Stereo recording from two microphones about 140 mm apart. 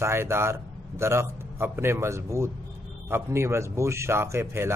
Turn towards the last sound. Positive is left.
turn(degrees=-20)  # may be behind; listen again after turning